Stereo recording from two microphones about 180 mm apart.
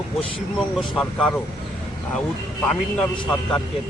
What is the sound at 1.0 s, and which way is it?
Speech, 5° left (ahead or behind).